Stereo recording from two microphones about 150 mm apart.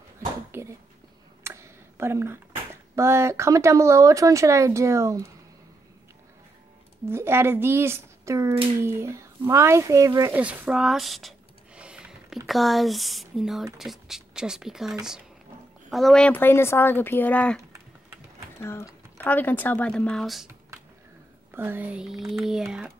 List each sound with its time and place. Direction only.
0.5 s a sound: 20° right (ahead or behind)
2.7 s speech: 20° right (ahead or behind)
7.1 s speech: 15° right (ahead or behind)
10.4 s a sound: 10° right (ahead or behind)
12.4 s speech: centre (ahead or behind)
18.6 s speech: 15° left (ahead or behind); by 20.4 s centre (ahead or behind)
21.5 s speech: 10° right (ahead or behind)